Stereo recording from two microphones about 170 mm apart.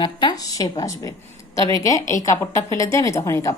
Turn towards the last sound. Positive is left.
turn(degrees=20)  # may be behind; listen again after turning